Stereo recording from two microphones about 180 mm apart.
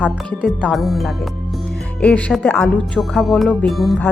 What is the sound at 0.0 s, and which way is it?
Speech, 5° left (ahead or behind).